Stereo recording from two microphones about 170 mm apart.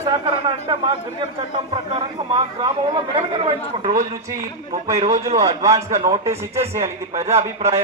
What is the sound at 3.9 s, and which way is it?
Speech, 45° right (ahead or behind).